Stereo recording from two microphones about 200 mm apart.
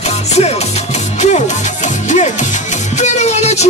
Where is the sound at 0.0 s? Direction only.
35° left (ahead or behind).